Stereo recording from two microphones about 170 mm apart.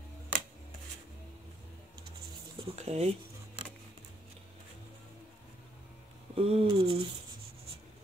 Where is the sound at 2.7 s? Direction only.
40° right (ahead or behind).